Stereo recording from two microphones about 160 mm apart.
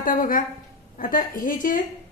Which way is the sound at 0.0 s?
60° left (ahead or behind).